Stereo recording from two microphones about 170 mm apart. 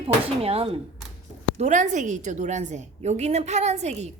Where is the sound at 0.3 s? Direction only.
35° right (ahead or behind).